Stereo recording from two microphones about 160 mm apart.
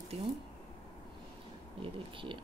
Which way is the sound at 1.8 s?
30° right (ahead or behind).